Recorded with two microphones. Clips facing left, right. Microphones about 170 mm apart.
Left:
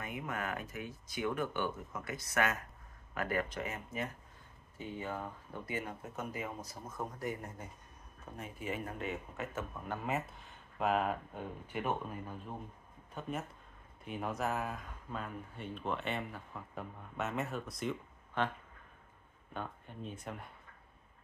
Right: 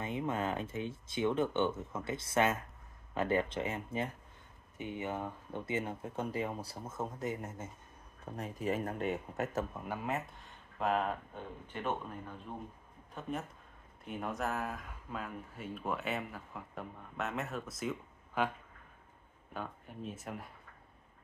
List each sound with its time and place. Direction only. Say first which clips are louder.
0.0 s speech: right 5 dB; 25° right (ahead or behind)
8.4 s speech: right 5 dB; 40° right (ahead or behind)
9.8 s speech: even; centre (ahead or behind)
19.5 s speech: even; 5° right (ahead or behind)